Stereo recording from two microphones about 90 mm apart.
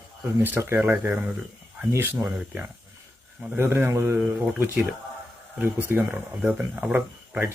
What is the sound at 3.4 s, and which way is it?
Speech, 25° right (ahead or behind).